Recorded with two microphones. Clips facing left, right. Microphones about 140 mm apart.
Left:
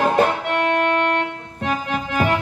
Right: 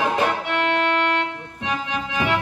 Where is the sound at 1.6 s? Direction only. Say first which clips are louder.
Left 3 dB; 45° left (ahead or behind).